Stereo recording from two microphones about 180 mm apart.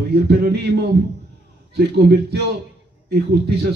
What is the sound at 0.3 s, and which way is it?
A man's voice, 65° right (ahead or behind).